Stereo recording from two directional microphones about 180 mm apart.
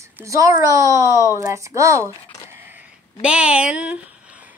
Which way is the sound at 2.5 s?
10° right (ahead or behind).